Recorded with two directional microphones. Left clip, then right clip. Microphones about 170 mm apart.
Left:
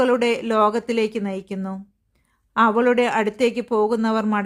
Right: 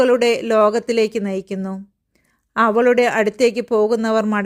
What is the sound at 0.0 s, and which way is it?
Speech, 20° right (ahead or behind).